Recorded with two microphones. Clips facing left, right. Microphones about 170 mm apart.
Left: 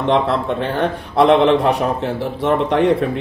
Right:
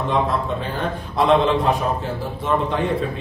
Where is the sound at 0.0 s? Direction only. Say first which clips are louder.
Left 4 dB; 80° left.